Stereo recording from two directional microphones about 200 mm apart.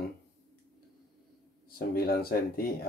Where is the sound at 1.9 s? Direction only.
50° left (ahead or behind).